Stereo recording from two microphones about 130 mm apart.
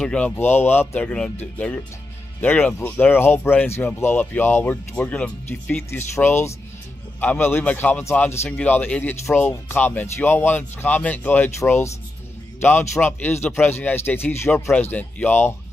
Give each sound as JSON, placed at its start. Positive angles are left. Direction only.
{"t": 0.0, "sound": "a man's voice", "side_deg": 10}